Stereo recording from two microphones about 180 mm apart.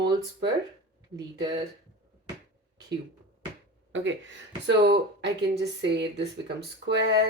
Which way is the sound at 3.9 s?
90° right.